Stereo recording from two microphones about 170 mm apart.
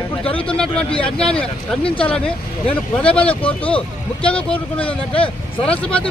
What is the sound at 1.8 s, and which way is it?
Speech, 30° left (ahead or behind).